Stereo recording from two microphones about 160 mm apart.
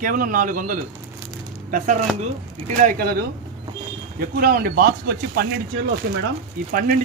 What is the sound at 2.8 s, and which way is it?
Speech, 65° right (ahead or behind).